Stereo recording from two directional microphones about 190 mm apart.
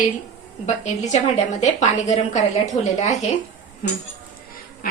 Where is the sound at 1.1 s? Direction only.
35° left (ahead or behind).